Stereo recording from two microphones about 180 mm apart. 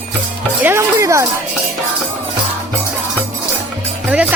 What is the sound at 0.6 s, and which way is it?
Music, 15° right (ahead or behind).